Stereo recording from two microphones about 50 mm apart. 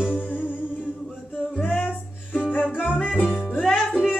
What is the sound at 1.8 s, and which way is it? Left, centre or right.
Music, left.